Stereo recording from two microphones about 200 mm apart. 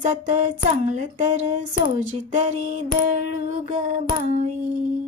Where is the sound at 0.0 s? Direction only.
35° right (ahead or behind).